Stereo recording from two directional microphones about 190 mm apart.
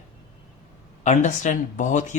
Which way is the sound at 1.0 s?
40° left (ahead or behind).